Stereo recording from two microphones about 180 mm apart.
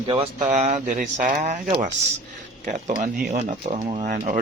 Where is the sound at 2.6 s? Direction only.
40° right (ahead or behind).